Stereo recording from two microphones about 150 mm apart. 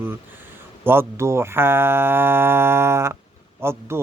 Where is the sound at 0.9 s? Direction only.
15° right (ahead or behind).